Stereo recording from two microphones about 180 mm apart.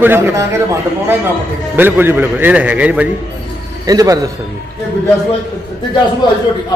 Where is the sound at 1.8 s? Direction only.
10° right (ahead or behind).